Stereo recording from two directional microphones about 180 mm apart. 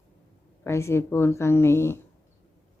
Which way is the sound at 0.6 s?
15° left (ahead or behind).